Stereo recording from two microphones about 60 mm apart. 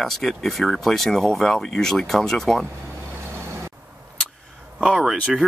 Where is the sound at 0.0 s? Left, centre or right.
Centre.